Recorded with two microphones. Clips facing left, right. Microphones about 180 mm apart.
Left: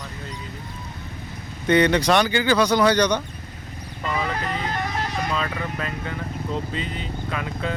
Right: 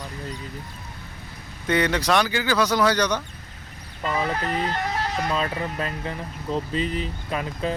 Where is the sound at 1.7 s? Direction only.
5° right (ahead or behind).